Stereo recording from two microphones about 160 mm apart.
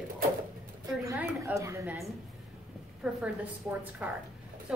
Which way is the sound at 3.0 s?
5° right (ahead or behind).